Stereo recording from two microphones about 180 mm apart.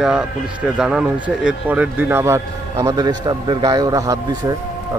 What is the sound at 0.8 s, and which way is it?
A man's voice, 5° right (ahead or behind).